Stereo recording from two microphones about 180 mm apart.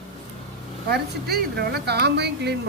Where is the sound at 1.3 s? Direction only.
65° right (ahead or behind).